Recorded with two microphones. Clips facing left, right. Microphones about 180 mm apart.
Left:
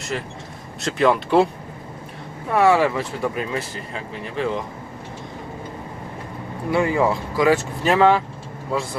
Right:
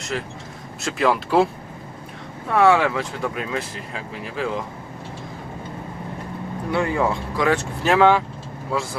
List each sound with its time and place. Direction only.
0.1 s speech: centre (ahead or behind)
2.5 s speech: 5° left (ahead or behind)
6.7 s speech: 5° left (ahead or behind)